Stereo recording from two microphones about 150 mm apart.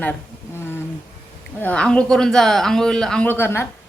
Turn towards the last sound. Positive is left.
turn(degrees=15)  # may be behind; listen again after turning